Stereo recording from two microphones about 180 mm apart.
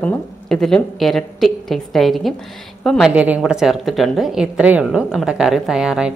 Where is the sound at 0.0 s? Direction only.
5° left (ahead or behind).